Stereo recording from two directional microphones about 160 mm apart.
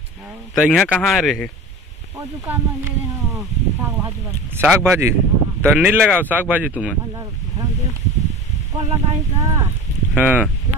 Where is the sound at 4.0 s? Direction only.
15° right (ahead or behind).